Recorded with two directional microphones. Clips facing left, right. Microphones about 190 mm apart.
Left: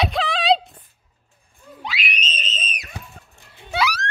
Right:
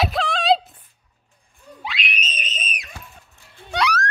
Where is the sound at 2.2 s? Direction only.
15° right (ahead or behind).